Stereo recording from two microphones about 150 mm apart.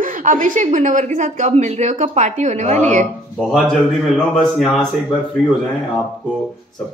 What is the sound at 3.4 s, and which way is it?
Speech, centre (ahead or behind).